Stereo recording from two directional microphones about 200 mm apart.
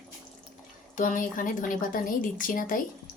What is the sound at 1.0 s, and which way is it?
A woman's voice, 40° left (ahead or behind).